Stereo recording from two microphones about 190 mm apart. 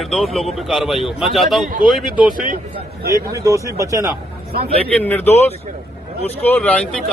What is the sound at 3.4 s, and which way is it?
Speech, 15° right (ahead or behind).